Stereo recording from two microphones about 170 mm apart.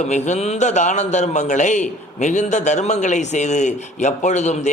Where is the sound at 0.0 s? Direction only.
45° left (ahead or behind).